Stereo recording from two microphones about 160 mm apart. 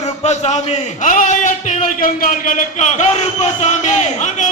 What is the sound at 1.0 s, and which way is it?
A man's voice, 55° left (ahead or behind).